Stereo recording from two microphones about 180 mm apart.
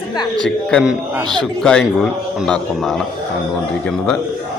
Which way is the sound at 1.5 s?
5° left (ahead or behind).